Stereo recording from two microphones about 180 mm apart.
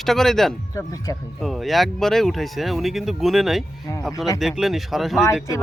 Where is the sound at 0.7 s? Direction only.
20° left (ahead or behind).